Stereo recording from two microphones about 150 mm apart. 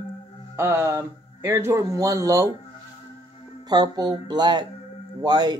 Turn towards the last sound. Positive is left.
turn(degrees=-25)  # may be behind; listen again after turning